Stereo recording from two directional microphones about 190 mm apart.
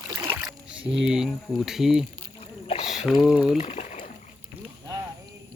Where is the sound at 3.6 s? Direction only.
35° left (ahead or behind).